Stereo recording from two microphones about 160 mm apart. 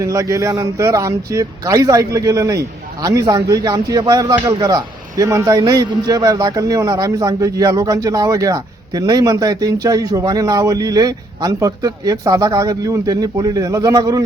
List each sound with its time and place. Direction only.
0.0 s speech: 20° right (ahead or behind)